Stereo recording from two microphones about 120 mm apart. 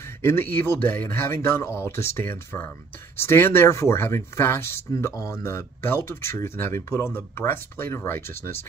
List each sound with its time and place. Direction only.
0.2 s speech: 20° left (ahead or behind)